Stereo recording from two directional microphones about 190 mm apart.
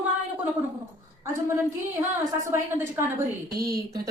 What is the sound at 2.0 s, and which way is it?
Speech, 20° right (ahead or behind).